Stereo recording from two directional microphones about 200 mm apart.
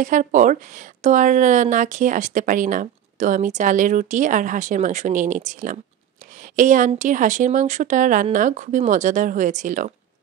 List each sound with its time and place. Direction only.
0.0 s speech: 40° right (ahead or behind)